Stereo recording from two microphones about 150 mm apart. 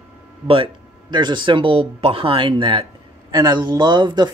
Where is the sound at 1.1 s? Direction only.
30° right (ahead or behind).